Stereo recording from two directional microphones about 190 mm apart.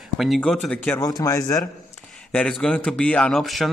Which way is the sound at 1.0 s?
20° left (ahead or behind).